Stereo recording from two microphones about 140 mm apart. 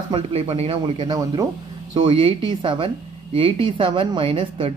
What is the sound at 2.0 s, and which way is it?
A woman's voice, 40° right (ahead or behind).